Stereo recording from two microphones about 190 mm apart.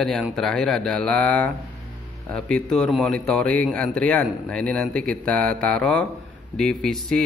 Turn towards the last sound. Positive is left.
turn(degrees=0)  # may be behind; listen again after turning